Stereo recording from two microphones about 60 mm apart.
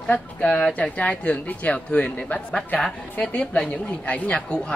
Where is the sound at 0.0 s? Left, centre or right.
Centre.